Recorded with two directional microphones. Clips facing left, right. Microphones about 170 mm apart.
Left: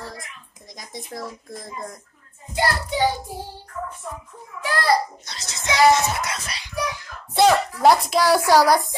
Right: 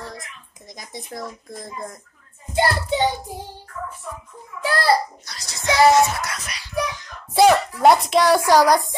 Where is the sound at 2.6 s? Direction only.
25° right (ahead or behind).